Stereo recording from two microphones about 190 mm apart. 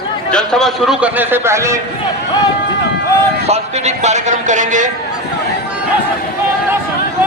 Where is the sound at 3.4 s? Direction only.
35° right (ahead or behind).